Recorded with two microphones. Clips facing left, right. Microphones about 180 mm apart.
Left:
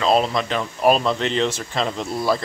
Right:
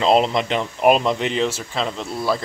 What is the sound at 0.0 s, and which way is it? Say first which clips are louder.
Speech: right 2 dB; 20° right (ahead or behind).